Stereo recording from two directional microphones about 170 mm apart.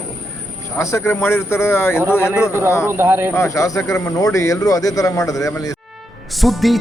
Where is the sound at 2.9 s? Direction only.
15° right (ahead or behind).